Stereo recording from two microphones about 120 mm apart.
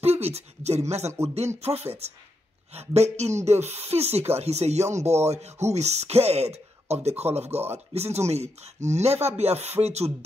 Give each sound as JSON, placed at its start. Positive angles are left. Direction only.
{"t": 0.0, "sound": "speech", "side_deg": -60}